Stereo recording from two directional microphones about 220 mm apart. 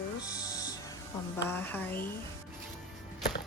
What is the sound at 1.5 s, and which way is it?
Speech, 10° left (ahead or behind).